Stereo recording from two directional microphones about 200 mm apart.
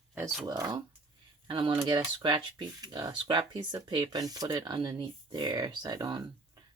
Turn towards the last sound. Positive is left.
turn(degrees=-20)  # may be behind; listen again after turning